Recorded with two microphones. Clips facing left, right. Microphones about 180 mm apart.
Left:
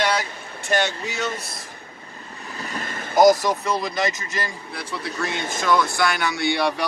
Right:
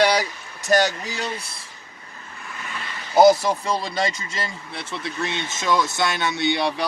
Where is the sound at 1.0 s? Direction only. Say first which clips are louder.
Left 2 dB; 35° right (ahead or behind).